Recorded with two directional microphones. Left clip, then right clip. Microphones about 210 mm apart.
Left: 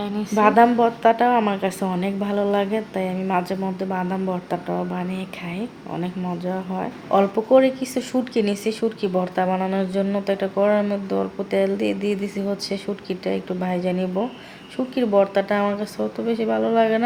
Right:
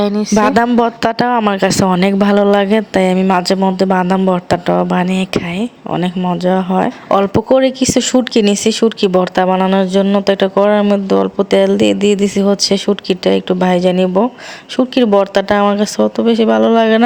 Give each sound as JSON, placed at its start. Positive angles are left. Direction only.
{"t": 0.0, "sound": "speech", "side_deg": -35}
{"t": 0.3, "sound": "speech", "side_deg": -50}